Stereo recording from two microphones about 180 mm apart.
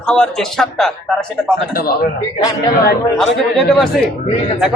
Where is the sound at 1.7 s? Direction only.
55° left (ahead or behind).